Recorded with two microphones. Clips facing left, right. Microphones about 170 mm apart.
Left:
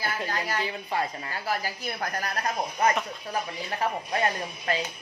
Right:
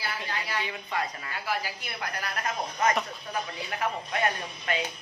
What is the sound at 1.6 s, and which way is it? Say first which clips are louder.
Speech: left 4 dB; 40° left (ahead or behind).